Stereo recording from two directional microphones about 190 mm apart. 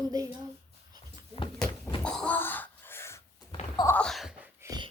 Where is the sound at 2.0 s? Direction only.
5° left (ahead or behind).